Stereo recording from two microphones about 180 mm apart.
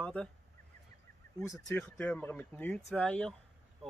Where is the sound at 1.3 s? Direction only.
15° left (ahead or behind).